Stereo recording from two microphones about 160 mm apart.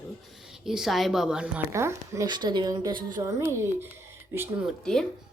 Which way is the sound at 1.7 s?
15° right (ahead or behind).